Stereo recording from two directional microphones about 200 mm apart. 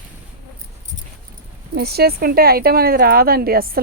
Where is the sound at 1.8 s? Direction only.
50° right (ahead or behind).